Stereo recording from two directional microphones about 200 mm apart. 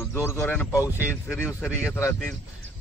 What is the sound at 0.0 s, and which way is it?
A man's voice, 15° left (ahead or behind).